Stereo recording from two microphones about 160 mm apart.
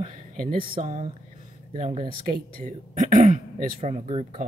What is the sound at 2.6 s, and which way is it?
Speech, 55° right (ahead or behind).